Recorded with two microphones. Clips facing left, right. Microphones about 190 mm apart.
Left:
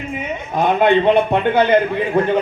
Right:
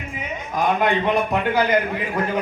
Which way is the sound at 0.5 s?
25° left (ahead or behind).